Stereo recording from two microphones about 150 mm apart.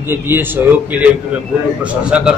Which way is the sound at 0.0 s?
15° right (ahead or behind).